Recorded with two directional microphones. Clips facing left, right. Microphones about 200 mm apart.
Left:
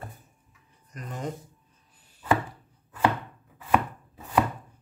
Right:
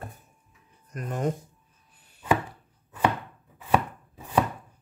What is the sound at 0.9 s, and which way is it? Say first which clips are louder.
Chopping: right 6 dB; 55° right (ahead or behind).